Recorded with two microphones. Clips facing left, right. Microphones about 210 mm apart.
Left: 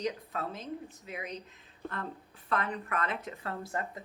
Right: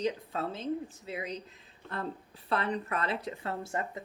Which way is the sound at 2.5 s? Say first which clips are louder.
Right 2 dB; 30° right (ahead or behind).